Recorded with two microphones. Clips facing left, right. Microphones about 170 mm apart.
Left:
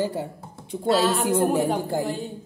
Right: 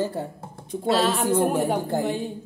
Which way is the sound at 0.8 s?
Centre (ahead or behind).